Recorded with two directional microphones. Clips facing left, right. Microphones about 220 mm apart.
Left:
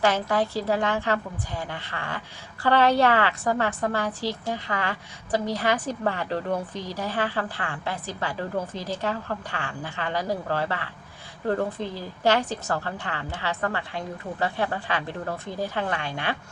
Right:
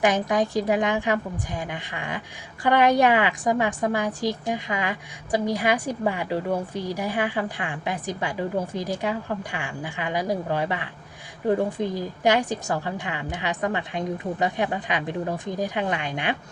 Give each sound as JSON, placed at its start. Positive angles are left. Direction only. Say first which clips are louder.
{"t": 0.0, "sound": "a woman's voice", "louder": "right 2 dB", "side_deg": -15}